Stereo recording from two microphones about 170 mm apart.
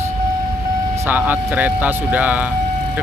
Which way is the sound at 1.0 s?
10° right (ahead or behind).